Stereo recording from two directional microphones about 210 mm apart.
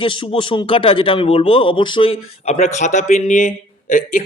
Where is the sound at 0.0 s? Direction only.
25° left (ahead or behind).